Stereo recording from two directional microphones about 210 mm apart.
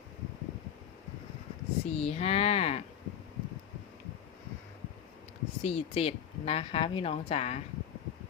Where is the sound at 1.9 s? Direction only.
30° left (ahead or behind).